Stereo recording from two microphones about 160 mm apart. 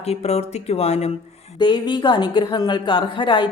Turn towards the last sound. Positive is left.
turn(degrees=30)  # may be behind; listen again after turning